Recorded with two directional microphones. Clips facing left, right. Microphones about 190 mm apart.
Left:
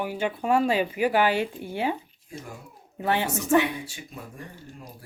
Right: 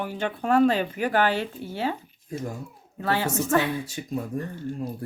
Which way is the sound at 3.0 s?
20° left (ahead or behind).